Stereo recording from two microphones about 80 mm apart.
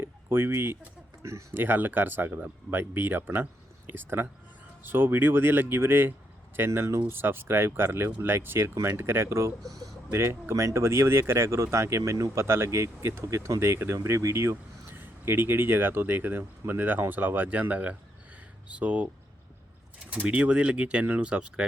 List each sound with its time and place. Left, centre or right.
0.0 s a sound: right
1.2 s speech: right; by 19.0 s centre
20.1 s speech: centre